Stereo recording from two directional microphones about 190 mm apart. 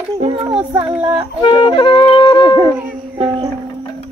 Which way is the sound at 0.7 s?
25° right (ahead or behind).